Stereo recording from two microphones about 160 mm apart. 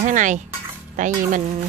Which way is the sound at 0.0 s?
50° right (ahead or behind).